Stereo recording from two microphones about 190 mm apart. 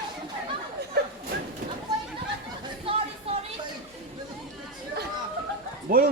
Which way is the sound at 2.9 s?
30° right (ahead or behind).